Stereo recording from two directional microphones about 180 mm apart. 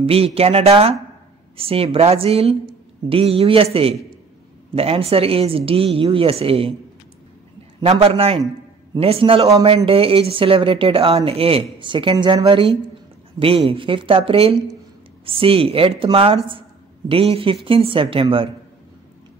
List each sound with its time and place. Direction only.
0.0 s speech: 35° right (ahead or behind)
7.8 s a woman's voice: 30° right (ahead or behind)